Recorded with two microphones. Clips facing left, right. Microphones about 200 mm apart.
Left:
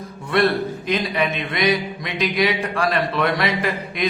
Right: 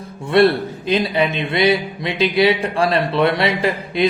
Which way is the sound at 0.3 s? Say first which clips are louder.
Right 5 dB; 30° right (ahead or behind).